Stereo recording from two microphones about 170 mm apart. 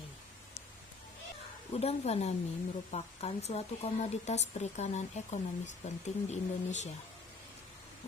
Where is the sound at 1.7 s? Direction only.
35° left (ahead or behind).